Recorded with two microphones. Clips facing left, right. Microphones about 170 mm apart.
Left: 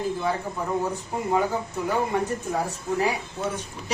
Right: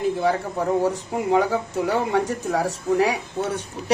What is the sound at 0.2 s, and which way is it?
Speech, 75° right (ahead or behind).